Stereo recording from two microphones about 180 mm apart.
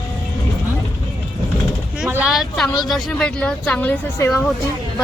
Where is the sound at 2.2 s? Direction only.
Centre (ahead or behind).